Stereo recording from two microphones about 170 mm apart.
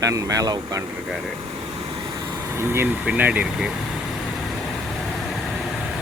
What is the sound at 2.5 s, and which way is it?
Speech, 15° right (ahead or behind).